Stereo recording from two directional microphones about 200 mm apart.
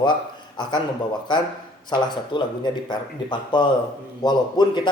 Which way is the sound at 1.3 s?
20° left (ahead or behind).